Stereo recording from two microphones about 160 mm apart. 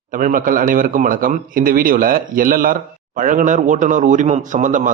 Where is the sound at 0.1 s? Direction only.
55° right (ahead or behind).